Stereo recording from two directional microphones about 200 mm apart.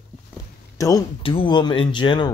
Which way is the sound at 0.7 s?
15° left (ahead or behind).